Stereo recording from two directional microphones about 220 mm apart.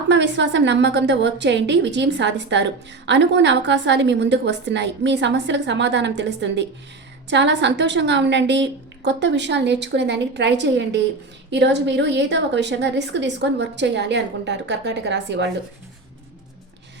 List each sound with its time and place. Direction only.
0.1 s a woman's voice: 55° right (ahead or behind)